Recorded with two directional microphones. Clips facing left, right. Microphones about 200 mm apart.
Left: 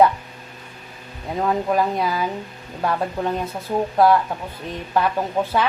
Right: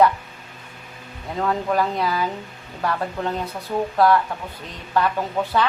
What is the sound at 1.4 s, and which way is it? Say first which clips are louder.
A man's voice: left 2 dB; 20° left (ahead or behind).